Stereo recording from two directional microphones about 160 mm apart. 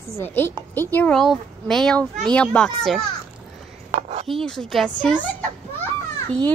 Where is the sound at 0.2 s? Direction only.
15° left (ahead or behind).